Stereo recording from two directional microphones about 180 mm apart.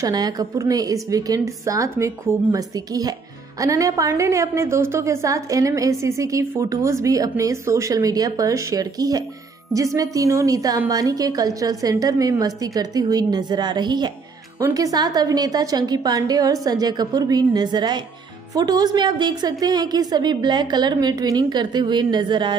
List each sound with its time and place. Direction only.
0.0 s a woman's voice: 20° right (ahead or behind)